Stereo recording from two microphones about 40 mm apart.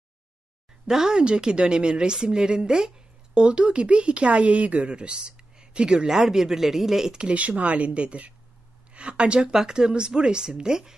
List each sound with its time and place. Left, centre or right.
0.8 s speech: centre
6.1 s speech: centre
7.3 s speech: right; by 11.0 s centre